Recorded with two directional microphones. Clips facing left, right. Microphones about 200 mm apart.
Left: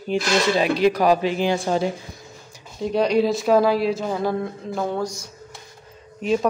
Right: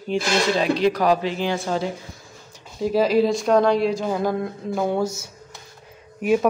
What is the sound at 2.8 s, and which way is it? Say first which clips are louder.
Speech: right 1 dB; 5° right (ahead or behind).